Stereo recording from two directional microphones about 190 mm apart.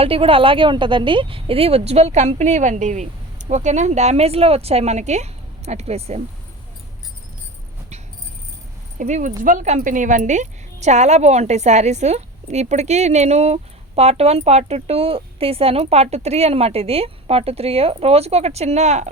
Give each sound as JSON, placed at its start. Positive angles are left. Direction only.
{"t": 0.0, "sound": "a woman's voice", "side_deg": -30}
{"t": 9.0, "sound": "a woman's voice", "side_deg": -40}